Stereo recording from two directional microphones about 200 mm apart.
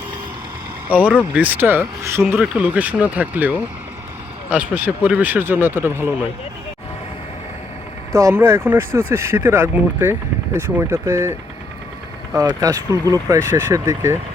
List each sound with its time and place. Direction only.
0.9 s speech: 5° right (ahead or behind)
8.1 s speech: 15° right (ahead or behind)
12.4 s speech: 15° right (ahead or behind)